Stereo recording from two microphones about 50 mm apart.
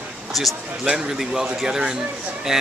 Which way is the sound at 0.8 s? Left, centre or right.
Centre.